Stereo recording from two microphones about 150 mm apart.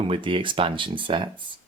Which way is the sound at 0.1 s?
35° right (ahead or behind).